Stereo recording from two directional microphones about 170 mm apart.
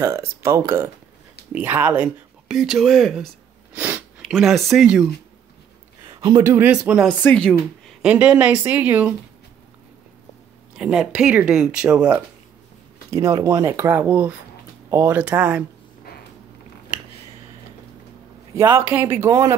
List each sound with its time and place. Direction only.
0.0 s speech: 15° right (ahead or behind); by 3.3 s centre (ahead or behind)
3.7 s a sound: 10° right (ahead or behind)
4.2 s speech: centre (ahead or behind)
6.0 s a sound: 25° right (ahead or behind)
6.4 s speech: 10° right (ahead or behind)
7.1 s a woman's voice: 5° left (ahead or behind)
8.1 s speech: 5° right (ahead or behind)
10.8 s speech: 5° right (ahead or behind)
13.1 s speech: 20° right (ahead or behind)
18.6 s speech: 15° right (ahead or behind)